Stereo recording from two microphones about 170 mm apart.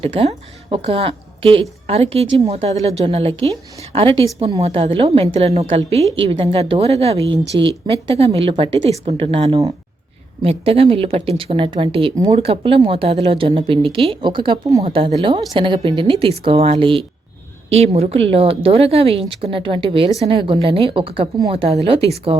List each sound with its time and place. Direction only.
0.0 s a woman's voice: 35° right (ahead or behind)
7.5 s speech: 25° right (ahead or behind)
8.2 s a woman's voice: 35° right (ahead or behind)